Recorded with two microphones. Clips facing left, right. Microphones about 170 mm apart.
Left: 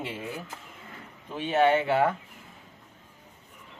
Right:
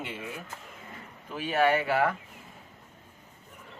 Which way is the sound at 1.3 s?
25° left (ahead or behind).